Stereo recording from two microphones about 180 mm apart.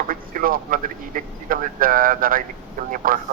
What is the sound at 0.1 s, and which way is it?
A man's voice, 50° right (ahead or behind).